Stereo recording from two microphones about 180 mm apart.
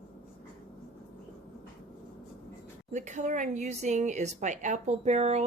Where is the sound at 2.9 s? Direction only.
40° right (ahead or behind).